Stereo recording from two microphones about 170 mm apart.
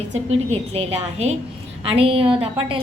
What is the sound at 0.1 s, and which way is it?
A woman's voice, 40° right (ahead or behind).